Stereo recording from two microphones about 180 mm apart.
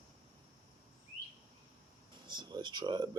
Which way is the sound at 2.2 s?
25° right (ahead or behind).